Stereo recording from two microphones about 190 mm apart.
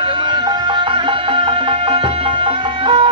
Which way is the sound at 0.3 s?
25° right (ahead or behind).